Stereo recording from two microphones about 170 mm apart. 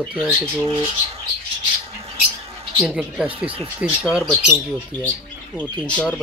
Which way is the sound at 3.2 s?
30° right (ahead or behind).